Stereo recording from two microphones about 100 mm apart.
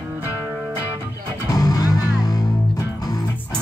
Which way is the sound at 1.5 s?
40° left (ahead or behind).